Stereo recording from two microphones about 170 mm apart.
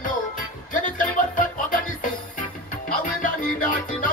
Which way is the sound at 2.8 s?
50° left (ahead or behind).